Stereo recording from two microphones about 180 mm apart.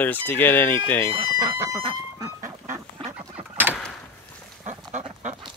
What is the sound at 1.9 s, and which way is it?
Dog, 15° right (ahead or behind).